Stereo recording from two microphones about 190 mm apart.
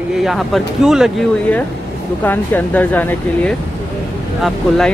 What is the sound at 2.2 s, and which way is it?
Speech, 10° left (ahead or behind).